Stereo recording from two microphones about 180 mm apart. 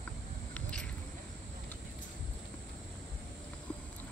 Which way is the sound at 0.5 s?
5° left (ahead or behind).